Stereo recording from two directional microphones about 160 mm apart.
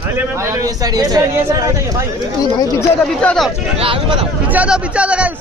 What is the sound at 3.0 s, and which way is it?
Speech, 5° left (ahead or behind).